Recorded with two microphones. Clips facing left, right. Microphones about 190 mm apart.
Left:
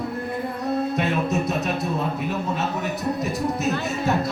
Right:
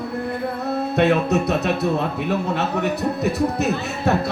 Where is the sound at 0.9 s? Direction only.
70° right (ahead or behind).